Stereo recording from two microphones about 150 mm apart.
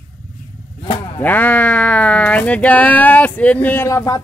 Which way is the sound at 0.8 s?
40° left (ahead or behind).